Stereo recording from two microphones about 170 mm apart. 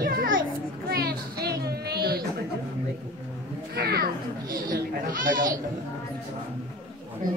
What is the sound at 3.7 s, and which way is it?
Speech, 65° right (ahead or behind).